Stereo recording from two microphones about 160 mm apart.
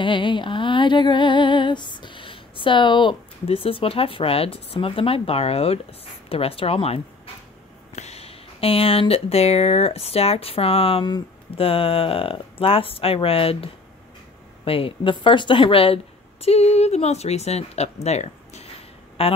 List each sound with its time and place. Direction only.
0.0 s speech: 30° left (ahead or behind)
18.0 s a sound: 45° left (ahead or behind)
19.2 s speech: 40° left (ahead or behind)